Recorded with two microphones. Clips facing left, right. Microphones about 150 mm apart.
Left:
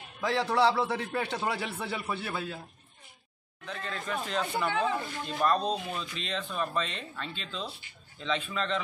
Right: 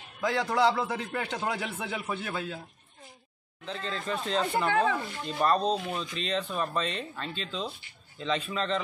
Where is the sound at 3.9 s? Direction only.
30° right (ahead or behind).